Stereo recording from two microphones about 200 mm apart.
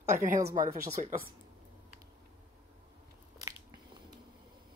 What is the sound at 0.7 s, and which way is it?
Speech, 35° right (ahead or behind).